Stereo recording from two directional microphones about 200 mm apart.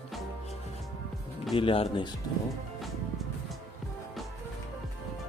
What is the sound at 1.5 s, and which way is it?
Speech, 25° left (ahead or behind).